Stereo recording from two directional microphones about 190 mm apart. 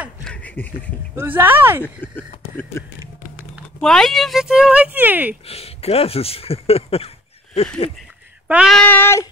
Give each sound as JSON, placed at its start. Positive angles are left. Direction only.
{"t": 0.2, "sound": "speech", "side_deg": 5}
{"t": 1.2, "sound": "speech", "side_deg": -10}
{"t": 2.1, "sound": "speech", "side_deg": 10}
{"t": 3.8, "sound": "speech", "side_deg": 0}
{"t": 5.5, "sound": "speech", "side_deg": 30}
{"t": 8.5, "sound": "speech", "side_deg": -5}
{"t": 8.8, "sound": "speech", "side_deg": 10}